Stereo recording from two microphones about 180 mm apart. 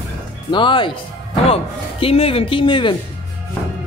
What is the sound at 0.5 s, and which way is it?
A man's voice, 25° left (ahead or behind).